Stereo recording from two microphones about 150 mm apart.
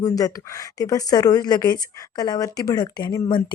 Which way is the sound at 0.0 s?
25° left (ahead or behind).